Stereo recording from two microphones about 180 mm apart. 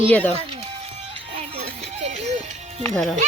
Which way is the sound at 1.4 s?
35° right (ahead or behind).